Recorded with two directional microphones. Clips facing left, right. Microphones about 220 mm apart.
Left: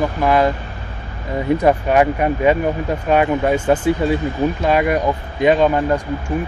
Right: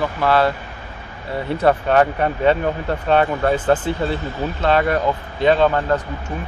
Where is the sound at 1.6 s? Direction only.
10° left (ahead or behind).